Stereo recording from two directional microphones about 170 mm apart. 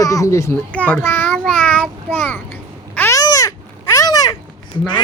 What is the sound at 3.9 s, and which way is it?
Cat, 20° left (ahead or behind).